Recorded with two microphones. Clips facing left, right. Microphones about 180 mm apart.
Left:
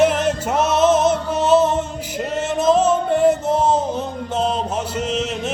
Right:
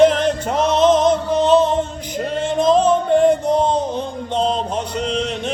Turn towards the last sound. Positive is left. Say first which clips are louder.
# right 1 dB
turn(degrees=5)  # may be behind; listen again after turning